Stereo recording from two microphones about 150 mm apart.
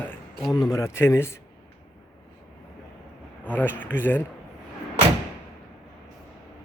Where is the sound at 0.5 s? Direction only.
25° left (ahead or behind).